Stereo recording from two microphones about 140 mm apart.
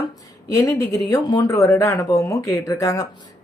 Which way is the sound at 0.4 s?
25° left (ahead or behind).